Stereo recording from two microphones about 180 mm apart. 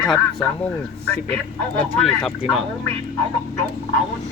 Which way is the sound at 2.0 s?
Centre (ahead or behind).